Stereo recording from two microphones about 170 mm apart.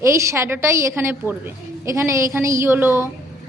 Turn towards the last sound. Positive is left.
turn(degrees=-15)  # may be behind; listen again after turning